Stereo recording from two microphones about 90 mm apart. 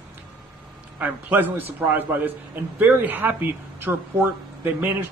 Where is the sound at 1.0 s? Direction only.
20° right (ahead or behind).